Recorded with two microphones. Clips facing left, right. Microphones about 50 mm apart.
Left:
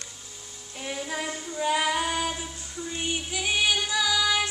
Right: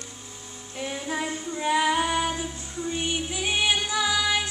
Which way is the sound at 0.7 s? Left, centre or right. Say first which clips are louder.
Right 2 dB; right.